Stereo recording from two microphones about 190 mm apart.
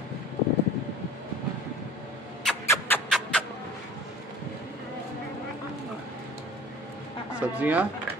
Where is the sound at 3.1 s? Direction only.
5° left (ahead or behind).